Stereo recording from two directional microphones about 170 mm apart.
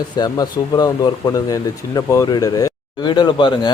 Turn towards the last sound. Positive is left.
turn(degrees=25)  # may be behind; listen again after turning